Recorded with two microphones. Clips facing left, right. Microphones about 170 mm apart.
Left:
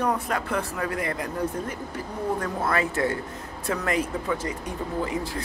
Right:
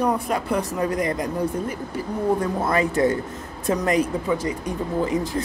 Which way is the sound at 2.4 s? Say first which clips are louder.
Right 4 dB; 15° right (ahead or behind).